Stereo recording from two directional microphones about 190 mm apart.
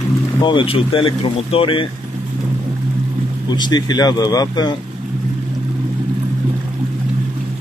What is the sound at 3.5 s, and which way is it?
Speech, 20° left (ahead or behind).